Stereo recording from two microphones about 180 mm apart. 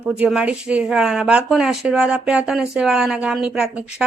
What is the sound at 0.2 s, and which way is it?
Speech, 5° right (ahead or behind).